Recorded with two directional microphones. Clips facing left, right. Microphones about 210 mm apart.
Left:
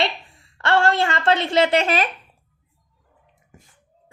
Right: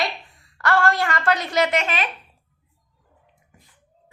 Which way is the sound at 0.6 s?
25° left (ahead or behind).